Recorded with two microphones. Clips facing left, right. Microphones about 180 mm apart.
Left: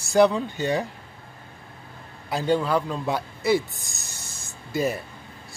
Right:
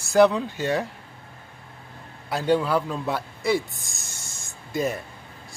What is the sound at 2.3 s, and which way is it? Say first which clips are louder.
A man's voice: right 1 dB; 5° right (ahead or behind).